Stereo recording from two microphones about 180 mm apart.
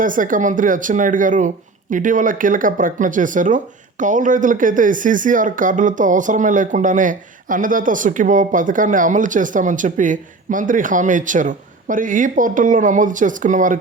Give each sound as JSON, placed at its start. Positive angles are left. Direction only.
{"t": 0.0, "sound": "speech", "side_deg": -50}